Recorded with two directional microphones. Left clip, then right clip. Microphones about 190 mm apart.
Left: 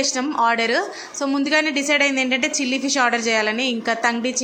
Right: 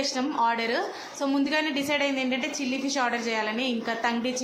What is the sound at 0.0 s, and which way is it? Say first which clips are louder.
A woman's voice: left 6 dB; 20° left (ahead or behind).